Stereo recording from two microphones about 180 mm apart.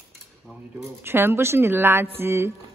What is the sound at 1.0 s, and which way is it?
Speech, 15° right (ahead or behind).